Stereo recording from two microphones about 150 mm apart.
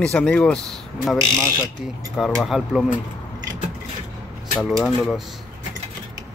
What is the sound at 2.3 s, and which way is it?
Speech, centre (ahead or behind).